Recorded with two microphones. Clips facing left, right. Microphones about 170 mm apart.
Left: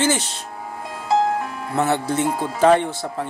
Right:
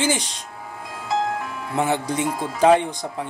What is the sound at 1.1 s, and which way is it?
Music, 35° left (ahead or behind).